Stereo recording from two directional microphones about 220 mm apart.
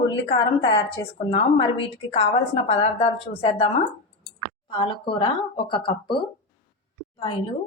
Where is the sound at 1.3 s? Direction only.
25° left (ahead or behind).